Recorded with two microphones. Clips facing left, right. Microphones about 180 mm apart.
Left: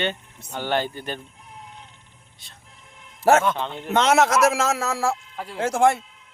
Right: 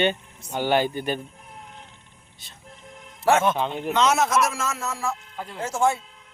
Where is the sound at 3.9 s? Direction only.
60° left (ahead or behind); by 5.2 s 90° left.